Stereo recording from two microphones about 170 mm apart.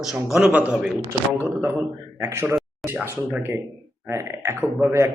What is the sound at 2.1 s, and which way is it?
A man's voice, 15° right (ahead or behind).